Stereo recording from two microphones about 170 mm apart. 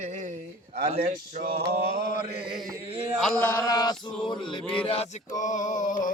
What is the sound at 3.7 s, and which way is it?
Male singing, 25° left (ahead or behind).